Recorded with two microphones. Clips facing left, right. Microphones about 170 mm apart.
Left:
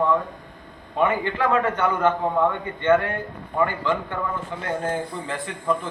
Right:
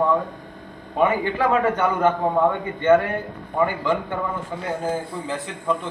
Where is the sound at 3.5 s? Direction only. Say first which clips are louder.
Right 1 dB; 10° right (ahead or behind).